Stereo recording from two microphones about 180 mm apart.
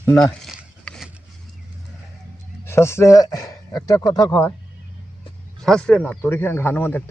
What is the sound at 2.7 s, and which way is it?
Speech, 15° left (ahead or behind).